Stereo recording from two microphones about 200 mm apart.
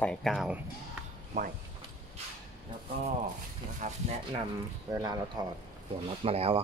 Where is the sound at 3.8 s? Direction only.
35° right (ahead or behind).